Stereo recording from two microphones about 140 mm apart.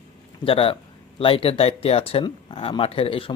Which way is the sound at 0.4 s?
40° left (ahead or behind).